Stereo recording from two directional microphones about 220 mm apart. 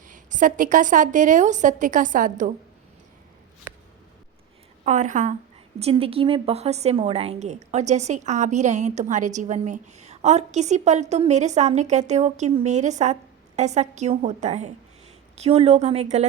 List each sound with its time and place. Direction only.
0.0 s a woman's voice: 35° right (ahead or behind)
4.9 s a woman's voice: 35° right (ahead or behind)